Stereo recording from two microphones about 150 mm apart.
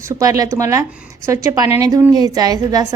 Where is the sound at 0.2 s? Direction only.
25° right (ahead or behind).